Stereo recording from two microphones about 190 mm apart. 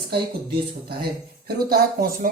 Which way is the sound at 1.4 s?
55° right (ahead or behind).